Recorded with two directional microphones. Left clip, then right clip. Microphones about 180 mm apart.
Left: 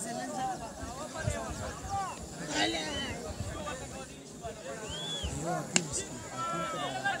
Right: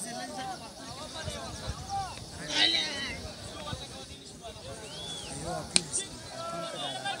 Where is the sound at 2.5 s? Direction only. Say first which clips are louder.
Right 5 dB; 50° left (ahead or behind).